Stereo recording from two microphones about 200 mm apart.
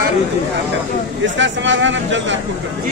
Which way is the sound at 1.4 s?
65° right (ahead or behind).